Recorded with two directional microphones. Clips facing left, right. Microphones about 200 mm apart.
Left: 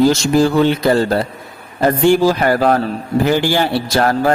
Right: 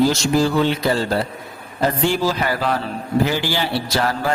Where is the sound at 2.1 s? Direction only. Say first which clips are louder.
Left 8 dB; 50° left (ahead or behind).